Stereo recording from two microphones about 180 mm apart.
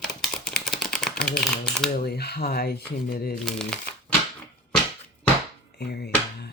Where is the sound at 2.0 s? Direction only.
60° left (ahead or behind).